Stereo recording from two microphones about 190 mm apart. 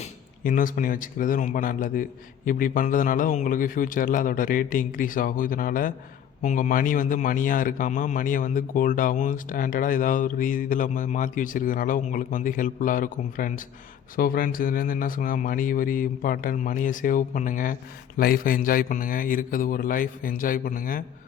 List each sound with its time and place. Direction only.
0.0 s a man's voice: 45° left (ahead or behind)